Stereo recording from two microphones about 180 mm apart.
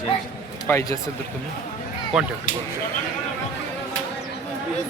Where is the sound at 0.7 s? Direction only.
15° left (ahead or behind).